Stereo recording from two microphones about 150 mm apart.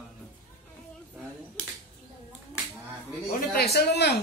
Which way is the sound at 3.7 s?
90° left.